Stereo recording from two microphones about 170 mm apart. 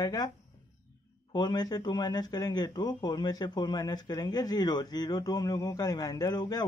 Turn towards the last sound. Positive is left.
turn(degrees=25)  # may be behind; listen again after turning